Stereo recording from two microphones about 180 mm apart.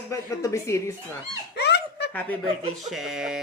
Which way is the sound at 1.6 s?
65° left (ahead or behind).